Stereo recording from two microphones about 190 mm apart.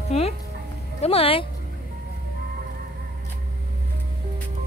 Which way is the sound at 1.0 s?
30° left (ahead or behind).